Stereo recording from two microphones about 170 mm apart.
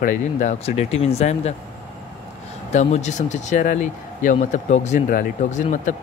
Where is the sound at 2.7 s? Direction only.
40° left (ahead or behind).